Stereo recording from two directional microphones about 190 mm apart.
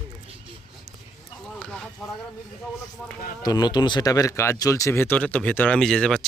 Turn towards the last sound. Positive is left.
turn(degrees=5)  # may be behind; listen again after turning